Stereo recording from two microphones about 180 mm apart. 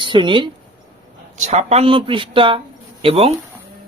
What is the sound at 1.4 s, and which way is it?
Speech, 40° right (ahead or behind).